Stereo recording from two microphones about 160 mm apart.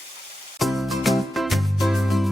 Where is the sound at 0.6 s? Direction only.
Centre (ahead or behind).